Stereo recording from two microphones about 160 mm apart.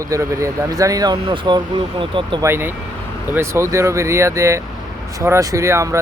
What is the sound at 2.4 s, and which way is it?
Speech, 15° right (ahead or behind).